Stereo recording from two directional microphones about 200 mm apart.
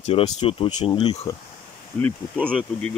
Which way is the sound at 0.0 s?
30° left (ahead or behind).